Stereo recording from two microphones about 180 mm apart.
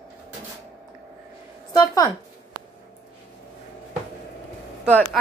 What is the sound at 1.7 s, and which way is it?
Speech, 20° left (ahead or behind).